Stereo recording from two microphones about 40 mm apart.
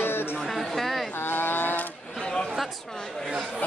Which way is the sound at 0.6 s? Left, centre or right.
Centre.